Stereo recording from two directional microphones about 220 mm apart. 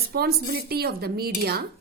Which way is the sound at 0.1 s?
45° right (ahead or behind).